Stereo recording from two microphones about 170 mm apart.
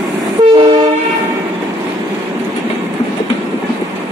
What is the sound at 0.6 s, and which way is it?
Train, 25° right (ahead or behind).